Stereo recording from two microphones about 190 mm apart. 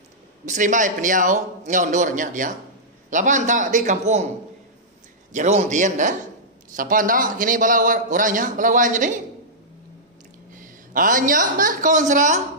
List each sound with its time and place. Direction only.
0.5 s a man's voice: 40° right (ahead or behind)
5.3 s a man's voice: 35° right (ahead or behind)
10.5 s a man's voice: 45° right (ahead or behind)